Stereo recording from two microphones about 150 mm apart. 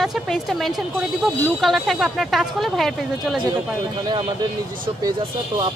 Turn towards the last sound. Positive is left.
turn(degrees=-30)  # may be behind; listen again after turning